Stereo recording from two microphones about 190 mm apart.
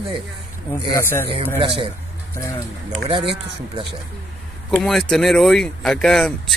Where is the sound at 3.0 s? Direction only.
30° right (ahead or behind).